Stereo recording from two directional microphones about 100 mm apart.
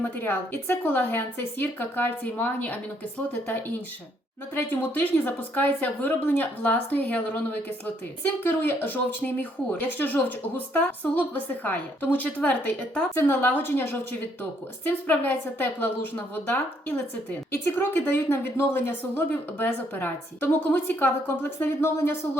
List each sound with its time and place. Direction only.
0.0 s a woman's voice: 20° left (ahead or behind)
4.5 s a woman's voice: 20° left (ahead or behind)
8.2 s a woman's voice: 20° left (ahead or behind)